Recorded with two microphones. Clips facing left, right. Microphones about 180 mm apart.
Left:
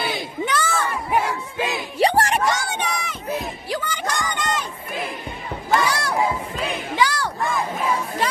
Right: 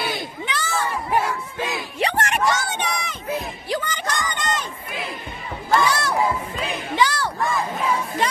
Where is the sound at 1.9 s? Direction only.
35° left (ahead or behind).